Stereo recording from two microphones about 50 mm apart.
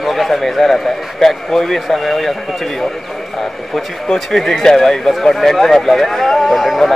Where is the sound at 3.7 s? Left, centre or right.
Centre.